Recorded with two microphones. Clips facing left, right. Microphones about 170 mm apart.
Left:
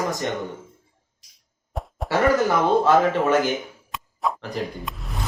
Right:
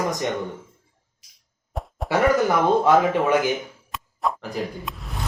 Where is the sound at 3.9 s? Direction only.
Centre (ahead or behind).